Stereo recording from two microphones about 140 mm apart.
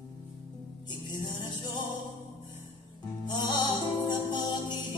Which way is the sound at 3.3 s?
30° left (ahead or behind).